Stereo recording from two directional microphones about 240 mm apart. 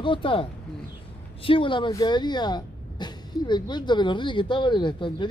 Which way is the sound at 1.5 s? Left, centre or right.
Left.